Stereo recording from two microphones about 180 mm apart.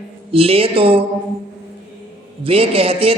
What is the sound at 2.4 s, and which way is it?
Music, 30° right (ahead or behind).